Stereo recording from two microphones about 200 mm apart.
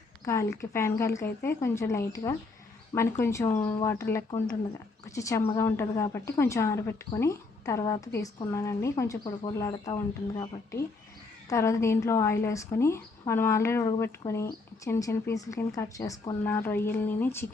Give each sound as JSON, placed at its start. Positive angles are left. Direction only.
{"t": 0.3, "sound": "speech", "side_deg": 15}